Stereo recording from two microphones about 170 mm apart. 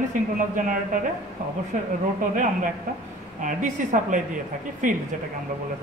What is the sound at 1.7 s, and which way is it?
A man's voice, 50° right (ahead or behind).